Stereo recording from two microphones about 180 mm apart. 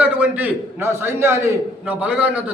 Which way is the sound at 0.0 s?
10° right (ahead or behind).